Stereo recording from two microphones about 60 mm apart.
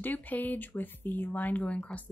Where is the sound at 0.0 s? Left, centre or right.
Left.